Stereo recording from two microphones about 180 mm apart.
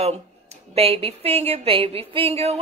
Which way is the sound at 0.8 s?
30° right (ahead or behind).